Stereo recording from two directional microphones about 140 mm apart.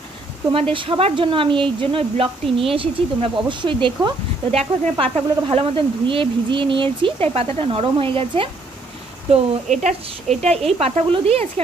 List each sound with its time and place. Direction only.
0.5 s speech: 40° right (ahead or behind)
9.3 s a woman's voice: 55° right (ahead or behind)